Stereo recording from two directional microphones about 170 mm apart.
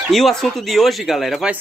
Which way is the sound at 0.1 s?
Centre (ahead or behind).